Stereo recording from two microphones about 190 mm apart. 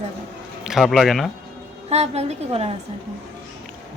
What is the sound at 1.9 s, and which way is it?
Speech, 35° right (ahead or behind).